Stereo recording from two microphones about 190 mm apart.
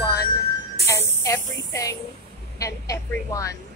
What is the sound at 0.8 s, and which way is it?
A woman's voice, 15° left (ahead or behind).